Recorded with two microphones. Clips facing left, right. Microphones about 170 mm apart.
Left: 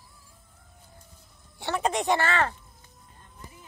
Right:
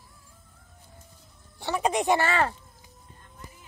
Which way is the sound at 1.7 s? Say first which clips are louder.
Right 1 dB; 10° right (ahead or behind).